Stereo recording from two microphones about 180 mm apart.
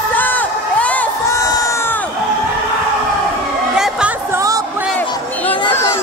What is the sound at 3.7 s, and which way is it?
Music, 5° right (ahead or behind).